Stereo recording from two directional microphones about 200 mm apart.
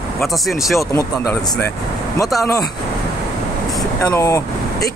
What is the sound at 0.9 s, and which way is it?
Speech, 15° left (ahead or behind).